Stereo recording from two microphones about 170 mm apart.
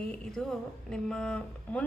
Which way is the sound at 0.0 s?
5° left (ahead or behind).